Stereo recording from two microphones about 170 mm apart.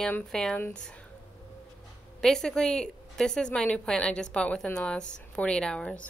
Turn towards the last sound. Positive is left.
turn(degrees=5)  # may be behind; listen again after turning